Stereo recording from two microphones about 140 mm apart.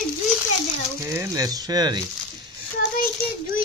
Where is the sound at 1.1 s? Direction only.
20° right (ahead or behind).